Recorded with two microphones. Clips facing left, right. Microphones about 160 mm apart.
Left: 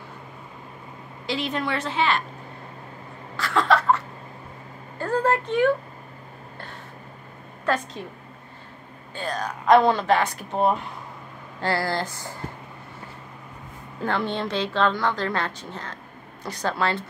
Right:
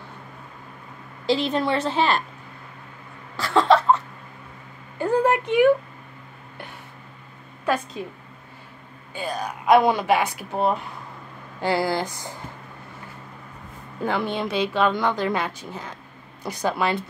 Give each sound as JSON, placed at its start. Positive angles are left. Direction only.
{"t": 1.2, "sound": "a woman's voice", "side_deg": -30}
{"t": 3.3, "sound": "cough", "side_deg": -30}
{"t": 4.9, "sound": "a sound", "side_deg": -15}
{"t": 7.6, "sound": "a woman's voice", "side_deg": -10}
{"t": 9.1, "sound": "a woman's voice", "side_deg": -10}
{"t": 11.6, "sound": "a woman's voice", "side_deg": -15}
{"t": 14.0, "sound": "a woman's voice", "side_deg": -10}